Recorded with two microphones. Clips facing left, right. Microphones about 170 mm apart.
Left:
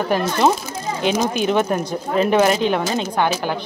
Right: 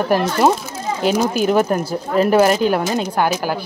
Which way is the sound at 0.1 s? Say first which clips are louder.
Right 2 dB; 10° right (ahead or behind).